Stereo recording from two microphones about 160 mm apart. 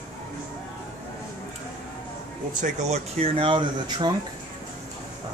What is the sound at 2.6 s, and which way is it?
Speech, 45° right (ahead or behind).